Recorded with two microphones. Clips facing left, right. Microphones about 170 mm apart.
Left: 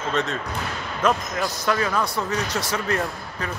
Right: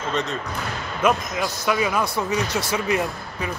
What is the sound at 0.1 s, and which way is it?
Speech, centre (ahead or behind).